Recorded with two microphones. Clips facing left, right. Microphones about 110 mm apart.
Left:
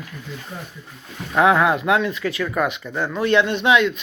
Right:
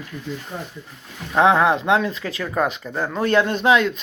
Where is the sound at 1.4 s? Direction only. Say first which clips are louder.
Even; 30° right (ahead or behind).